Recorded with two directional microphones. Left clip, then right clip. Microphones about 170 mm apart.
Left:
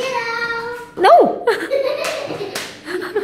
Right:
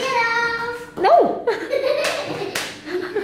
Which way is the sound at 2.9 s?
30° left (ahead or behind).